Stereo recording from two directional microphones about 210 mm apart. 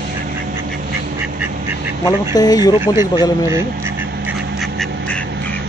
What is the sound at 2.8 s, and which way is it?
Speech, 15° right (ahead or behind).